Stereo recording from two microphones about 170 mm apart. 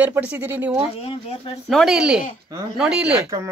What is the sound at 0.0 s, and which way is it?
Speech, 10° right (ahead or behind).